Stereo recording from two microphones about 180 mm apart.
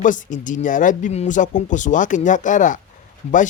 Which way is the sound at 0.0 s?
45° left (ahead or behind).